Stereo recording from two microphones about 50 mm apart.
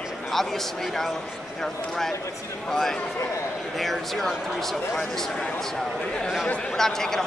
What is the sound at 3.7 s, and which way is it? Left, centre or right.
Speech, centre.